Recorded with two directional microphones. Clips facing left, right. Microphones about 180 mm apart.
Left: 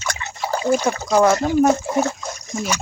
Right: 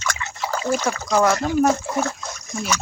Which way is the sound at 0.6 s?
15° left (ahead or behind).